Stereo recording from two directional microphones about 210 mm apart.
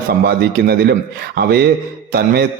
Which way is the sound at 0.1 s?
50° right (ahead or behind).